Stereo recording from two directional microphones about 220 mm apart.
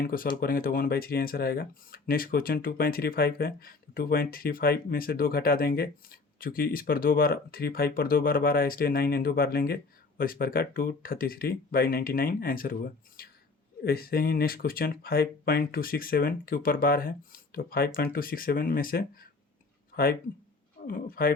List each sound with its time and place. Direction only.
0.0 s speech: 40° left (ahead or behind)
20.8 s speech: 40° left (ahead or behind)